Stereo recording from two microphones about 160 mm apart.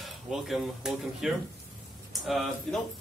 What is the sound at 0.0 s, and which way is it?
Speech, centre (ahead or behind).